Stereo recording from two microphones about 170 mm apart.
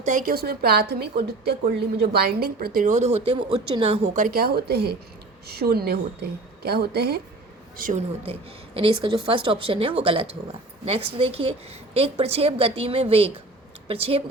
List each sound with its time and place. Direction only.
0.0 s a woman's voice: 50° right (ahead or behind); by 7.2 s 70° right (ahead or behind)
7.8 s speech: 50° right (ahead or behind)
8.2 s a woman's voice: 35° right (ahead or behind)